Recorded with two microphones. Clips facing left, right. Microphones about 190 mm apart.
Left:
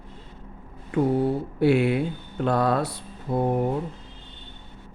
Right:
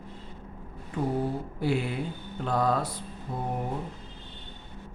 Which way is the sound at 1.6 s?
70° left (ahead or behind).